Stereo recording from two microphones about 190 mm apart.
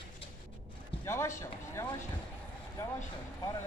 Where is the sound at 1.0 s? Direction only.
15° left (ahead or behind).